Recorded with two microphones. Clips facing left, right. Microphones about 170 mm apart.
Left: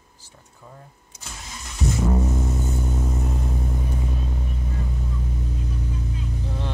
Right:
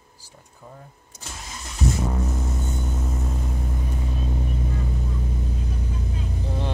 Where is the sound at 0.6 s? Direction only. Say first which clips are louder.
Right 2 dB; 15° right (ahead or behind).